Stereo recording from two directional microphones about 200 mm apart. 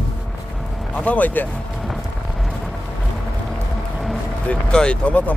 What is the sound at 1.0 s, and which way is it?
Speech, 5° left (ahead or behind).